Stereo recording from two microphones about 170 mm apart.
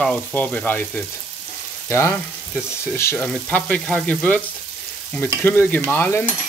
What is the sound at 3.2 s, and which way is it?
Frying, 5° left (ahead or behind).